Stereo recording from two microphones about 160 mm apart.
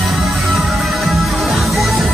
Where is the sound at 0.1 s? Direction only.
Centre (ahead or behind).